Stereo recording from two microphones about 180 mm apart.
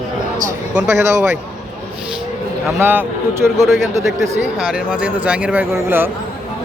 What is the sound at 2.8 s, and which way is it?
Speech, 10° right (ahead or behind).